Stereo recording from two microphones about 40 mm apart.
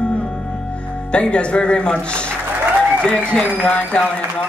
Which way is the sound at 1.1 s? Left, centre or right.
Left.